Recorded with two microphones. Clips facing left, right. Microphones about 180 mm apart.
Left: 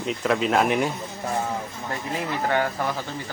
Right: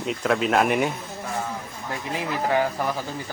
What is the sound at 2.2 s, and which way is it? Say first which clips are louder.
Speech: right 1 dB; 5° right (ahead or behind).